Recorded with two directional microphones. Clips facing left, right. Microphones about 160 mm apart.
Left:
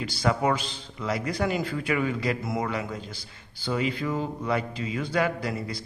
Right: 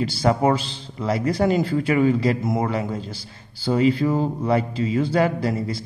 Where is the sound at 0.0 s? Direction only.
30° right (ahead or behind).